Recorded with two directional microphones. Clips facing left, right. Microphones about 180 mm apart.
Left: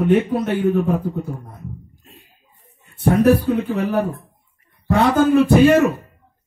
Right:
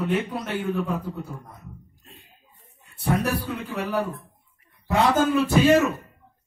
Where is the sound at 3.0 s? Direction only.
50° left (ahead or behind).